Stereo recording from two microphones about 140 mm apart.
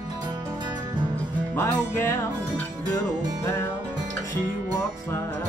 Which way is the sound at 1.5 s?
15° left (ahead or behind).